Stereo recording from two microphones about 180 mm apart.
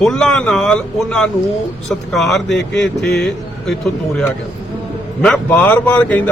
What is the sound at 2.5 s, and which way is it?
Speech, 75° left (ahead or behind).